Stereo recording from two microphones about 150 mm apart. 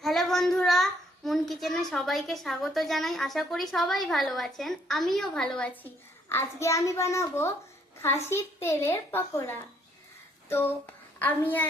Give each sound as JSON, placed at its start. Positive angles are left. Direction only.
{"t": 0.0, "sound": "a child's voice", "side_deg": 0}